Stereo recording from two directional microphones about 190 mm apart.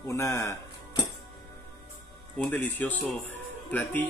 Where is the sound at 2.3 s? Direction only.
10° left (ahead or behind).